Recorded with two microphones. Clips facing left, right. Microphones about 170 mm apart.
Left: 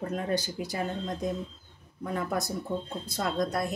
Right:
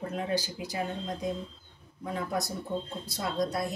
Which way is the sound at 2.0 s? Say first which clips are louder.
Left 2 dB; 50° left (ahead or behind).